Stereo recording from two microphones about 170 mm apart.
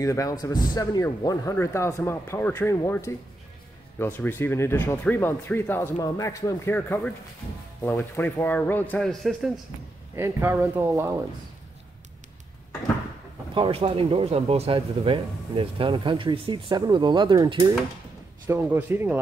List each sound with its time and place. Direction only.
0.0 s speech: 20° left (ahead or behind); by 9.5 s centre (ahead or behind)
10.1 s a man's voice: 15° right (ahead or behind)
13.6 s speech: 35° right (ahead or behind)
18.5 s a man's voice: 10° right (ahead or behind)